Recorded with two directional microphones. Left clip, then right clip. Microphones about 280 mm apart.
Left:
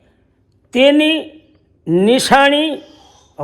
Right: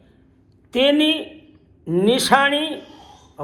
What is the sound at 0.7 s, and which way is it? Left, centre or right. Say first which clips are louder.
A man's voice: left 5 dB; left.